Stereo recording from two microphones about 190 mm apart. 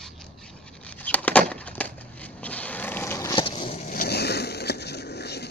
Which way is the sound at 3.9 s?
55° left (ahead or behind).